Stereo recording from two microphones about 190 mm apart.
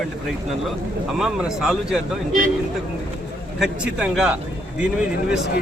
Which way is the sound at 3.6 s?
5° right (ahead or behind).